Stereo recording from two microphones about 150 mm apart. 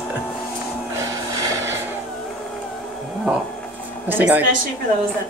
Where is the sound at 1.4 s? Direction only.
20° right (ahead or behind).